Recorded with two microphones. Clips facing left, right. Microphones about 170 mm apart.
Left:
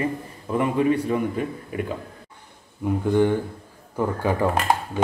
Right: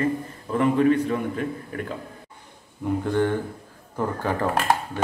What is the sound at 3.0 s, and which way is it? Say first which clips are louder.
Speech: left 4 dB; 10° left (ahead or behind).